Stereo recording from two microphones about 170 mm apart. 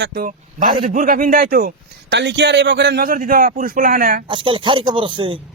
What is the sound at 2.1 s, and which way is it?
Speech, 90° right.